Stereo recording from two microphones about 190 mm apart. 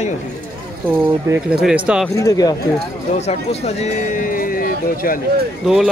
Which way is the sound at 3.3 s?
35° left (ahead or behind).